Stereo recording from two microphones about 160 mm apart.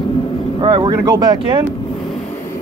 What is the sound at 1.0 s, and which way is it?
Speech, 25° right (ahead or behind).